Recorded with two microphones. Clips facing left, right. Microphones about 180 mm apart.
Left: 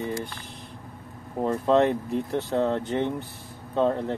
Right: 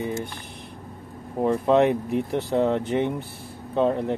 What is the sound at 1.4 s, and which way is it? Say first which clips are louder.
Speech: right 2 dB; 10° right (ahead or behind).